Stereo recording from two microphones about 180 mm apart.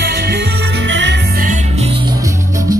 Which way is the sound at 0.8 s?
90° right.